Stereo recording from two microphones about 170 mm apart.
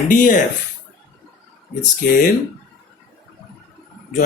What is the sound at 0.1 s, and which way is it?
Speech, 50° left (ahead or behind).